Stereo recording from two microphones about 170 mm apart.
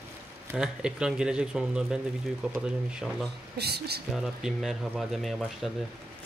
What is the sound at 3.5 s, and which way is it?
Speech, 70° right (ahead or behind).